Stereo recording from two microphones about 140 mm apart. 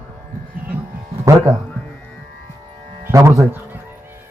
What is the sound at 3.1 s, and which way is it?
Speech, 20° right (ahead or behind).